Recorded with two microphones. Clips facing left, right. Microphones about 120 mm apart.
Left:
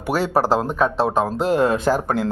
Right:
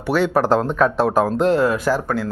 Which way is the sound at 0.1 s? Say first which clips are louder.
Right 2 dB; 35° left (ahead or behind).